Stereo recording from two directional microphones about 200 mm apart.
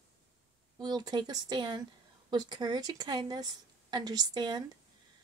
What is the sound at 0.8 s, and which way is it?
A woman's voice, 20° right (ahead or behind).